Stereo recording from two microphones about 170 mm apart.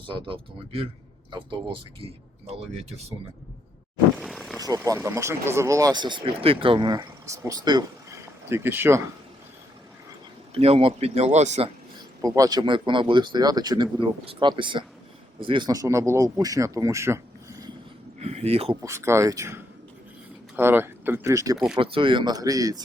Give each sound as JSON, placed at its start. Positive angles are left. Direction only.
{"t": 0.0, "sound": "speech", "side_deg": -30}
{"t": 4.2, "sound": "vehicle", "side_deg": 0}
{"t": 4.5, "sound": "vehicle", "side_deg": -20}
{"t": 4.8, "sound": "speech", "side_deg": -15}
{"t": 10.5, "sound": "speech", "side_deg": -35}
{"t": 12.2, "sound": "speech", "side_deg": -20}
{"t": 18.2, "sound": "speech", "side_deg": -40}
{"t": 18.8, "sound": "speech", "side_deg": -15}
{"t": 21.8, "sound": "speech", "side_deg": -30}